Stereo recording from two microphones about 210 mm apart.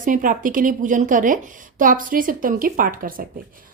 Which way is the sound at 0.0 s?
40° right (ahead or behind).